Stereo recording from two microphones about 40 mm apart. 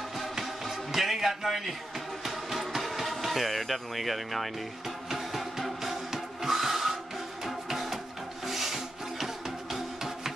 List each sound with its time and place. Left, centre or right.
0.4 s music: centre